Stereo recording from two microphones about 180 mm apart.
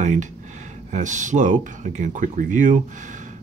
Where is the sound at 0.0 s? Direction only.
45° right (ahead or behind).